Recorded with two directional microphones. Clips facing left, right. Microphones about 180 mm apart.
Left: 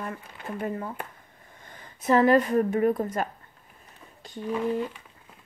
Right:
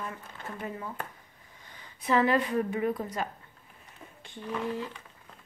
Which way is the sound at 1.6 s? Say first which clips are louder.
Left 6 dB; 50° left (ahead or behind).